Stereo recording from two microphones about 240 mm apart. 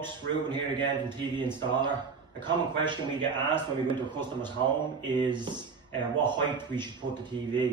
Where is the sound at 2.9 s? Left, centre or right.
Centre.